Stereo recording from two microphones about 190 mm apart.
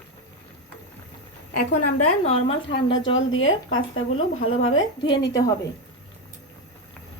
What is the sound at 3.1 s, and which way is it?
Speech, 90° left.